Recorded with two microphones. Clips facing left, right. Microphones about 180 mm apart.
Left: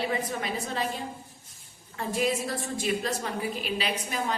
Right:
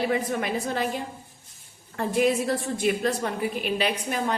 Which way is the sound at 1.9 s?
55° right (ahead or behind).